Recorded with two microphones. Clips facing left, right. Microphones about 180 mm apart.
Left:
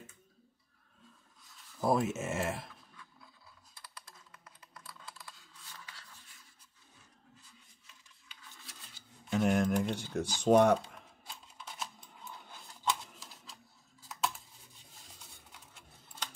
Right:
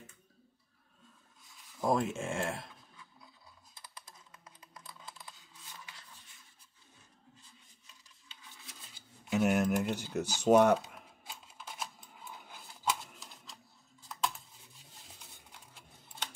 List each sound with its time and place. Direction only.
1.8 s speech: 5° left (ahead or behind)
4.1 s computer keyboard: 20° right (ahead or behind)
9.3 s a sound: 5° right (ahead or behind)